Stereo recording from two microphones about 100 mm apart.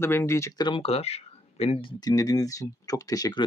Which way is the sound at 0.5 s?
45° left (ahead or behind).